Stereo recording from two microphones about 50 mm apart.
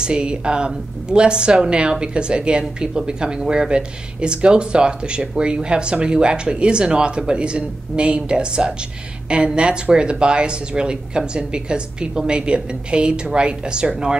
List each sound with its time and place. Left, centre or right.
0.0 s speech: centre